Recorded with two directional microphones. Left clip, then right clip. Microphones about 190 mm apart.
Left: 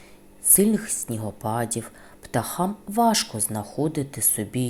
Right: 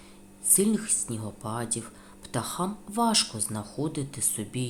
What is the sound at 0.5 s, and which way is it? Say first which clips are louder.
Speech: left 4 dB; 20° left (ahead or behind).